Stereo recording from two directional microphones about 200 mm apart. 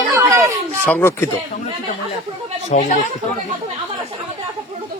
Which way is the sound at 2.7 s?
35° left (ahead or behind).